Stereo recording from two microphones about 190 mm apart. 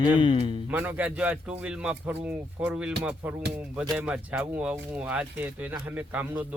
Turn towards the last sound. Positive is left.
turn(degrees=-10)  # may be behind; listen again after turning